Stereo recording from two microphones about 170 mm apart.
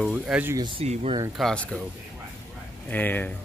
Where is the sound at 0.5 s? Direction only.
30° right (ahead or behind).